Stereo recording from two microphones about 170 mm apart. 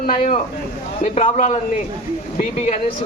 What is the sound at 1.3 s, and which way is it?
Speech, 45° left (ahead or behind).